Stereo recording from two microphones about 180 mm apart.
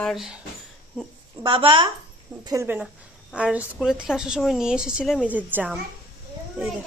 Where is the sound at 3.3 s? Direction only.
5° right (ahead or behind).